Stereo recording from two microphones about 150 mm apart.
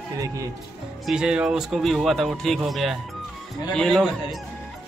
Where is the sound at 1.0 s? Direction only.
5° right (ahead or behind).